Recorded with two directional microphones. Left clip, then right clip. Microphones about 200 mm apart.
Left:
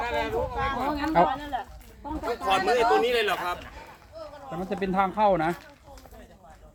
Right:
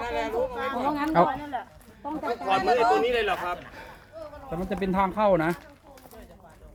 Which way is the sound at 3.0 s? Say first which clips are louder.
Left 1 dB; 60° left (ahead or behind).